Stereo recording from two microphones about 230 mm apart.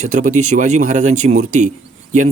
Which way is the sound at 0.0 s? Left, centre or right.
Right.